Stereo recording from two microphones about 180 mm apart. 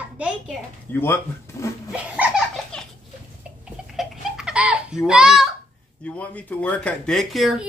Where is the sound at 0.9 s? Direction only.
15° left (ahead or behind).